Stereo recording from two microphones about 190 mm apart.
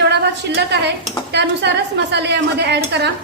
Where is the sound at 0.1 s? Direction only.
60° right (ahead or behind).